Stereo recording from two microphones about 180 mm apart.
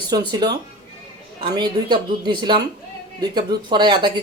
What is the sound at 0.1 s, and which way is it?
Speech, 25° right (ahead or behind).